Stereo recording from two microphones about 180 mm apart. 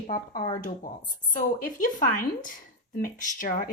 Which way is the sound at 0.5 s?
45° left (ahead or behind).